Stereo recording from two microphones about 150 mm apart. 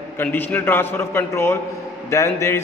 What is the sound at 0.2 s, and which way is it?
A man's voice, 15° left (ahead or behind).